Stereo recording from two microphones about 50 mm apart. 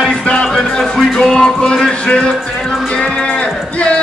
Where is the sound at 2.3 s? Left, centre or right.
Centre; by 4.0 s left.